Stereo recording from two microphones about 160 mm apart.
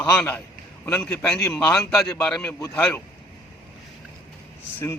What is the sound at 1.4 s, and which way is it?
Mantra, 20° left (ahead or behind).